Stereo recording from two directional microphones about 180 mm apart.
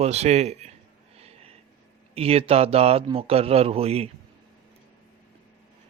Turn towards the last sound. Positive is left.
turn(degrees=-35)  # may be behind; listen again after turning